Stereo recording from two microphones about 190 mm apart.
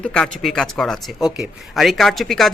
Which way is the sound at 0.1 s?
5° left (ahead or behind).